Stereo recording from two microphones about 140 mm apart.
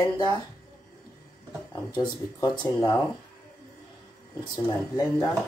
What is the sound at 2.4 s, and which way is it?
Speech, 30° left (ahead or behind).